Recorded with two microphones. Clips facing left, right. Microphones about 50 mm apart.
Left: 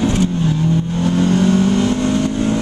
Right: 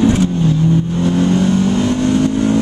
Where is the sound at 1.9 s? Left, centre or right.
Centre.